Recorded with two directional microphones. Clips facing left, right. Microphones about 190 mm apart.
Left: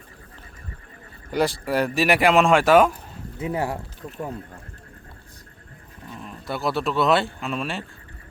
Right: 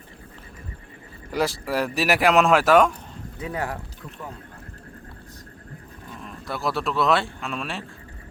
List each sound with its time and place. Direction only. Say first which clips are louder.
1.3 s speech: left 2 dB; centre (ahead or behind)
3.4 s speech: left 4 dB; 25° left (ahead or behind)
6.1 s speech: left 2 dB; centre (ahead or behind)